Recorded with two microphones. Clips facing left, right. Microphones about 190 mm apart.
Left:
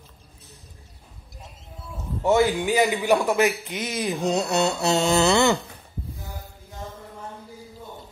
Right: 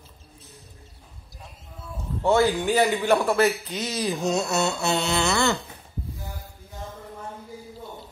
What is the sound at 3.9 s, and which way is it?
Mantra, 25° left (ahead or behind).